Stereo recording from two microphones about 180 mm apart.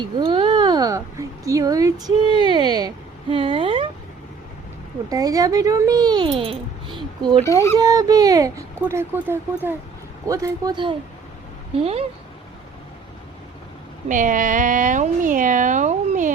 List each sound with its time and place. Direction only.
0.0 s speech: 25° right (ahead or behind)
2.2 s speech: 30° left (ahead or behind)
2.5 s speech: 25° right (ahead or behind)
5.0 s speech: 20° right (ahead or behind)
7.4 s speech: 15° left (ahead or behind)
7.8 s speech: 20° right (ahead or behind)
14.1 s speech: 45° right (ahead or behind)